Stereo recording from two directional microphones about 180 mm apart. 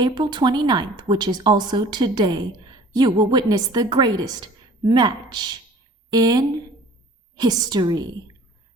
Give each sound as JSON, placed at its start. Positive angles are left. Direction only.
{"t": 0.0, "sound": "a woman's voice", "side_deg": -25}